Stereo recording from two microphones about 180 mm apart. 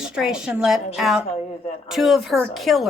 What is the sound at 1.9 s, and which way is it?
Speech, centre (ahead or behind).